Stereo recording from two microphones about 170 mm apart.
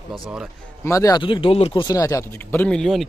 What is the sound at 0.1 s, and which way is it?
Speech, 5° right (ahead or behind).